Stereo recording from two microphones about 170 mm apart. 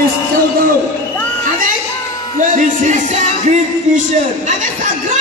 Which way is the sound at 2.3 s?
50° right (ahead or behind).